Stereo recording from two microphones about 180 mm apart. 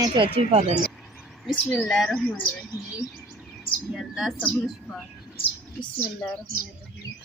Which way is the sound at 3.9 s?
Centre (ahead or behind).